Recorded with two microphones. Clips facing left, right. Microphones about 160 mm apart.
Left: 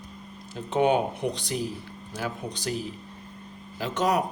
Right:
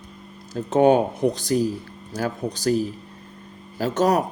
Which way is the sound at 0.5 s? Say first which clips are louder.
Right 6 dB; 40° right (ahead or behind).